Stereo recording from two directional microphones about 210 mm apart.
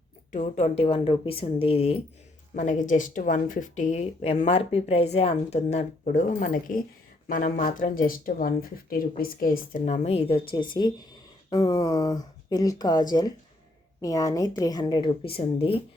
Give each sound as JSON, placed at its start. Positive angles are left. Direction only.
{"t": 0.3, "sound": "speech", "side_deg": 35}
{"t": 2.6, "sound": "speech", "side_deg": 35}